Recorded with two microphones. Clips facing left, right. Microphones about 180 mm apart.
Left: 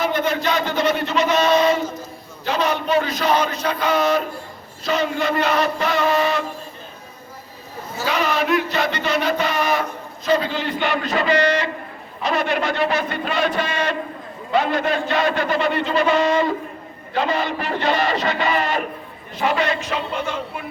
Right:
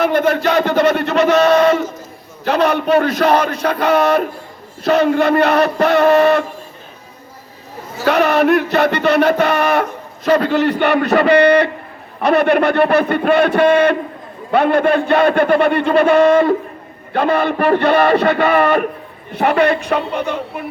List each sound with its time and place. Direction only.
0.0 s chant: 60° right (ahead or behind)
2.4 s a man's voice: 60° right (ahead or behind)
8.0 s a man's voice: 60° right (ahead or behind)